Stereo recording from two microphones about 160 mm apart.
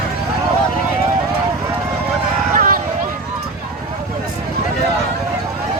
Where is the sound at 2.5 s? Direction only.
60° right (ahead or behind).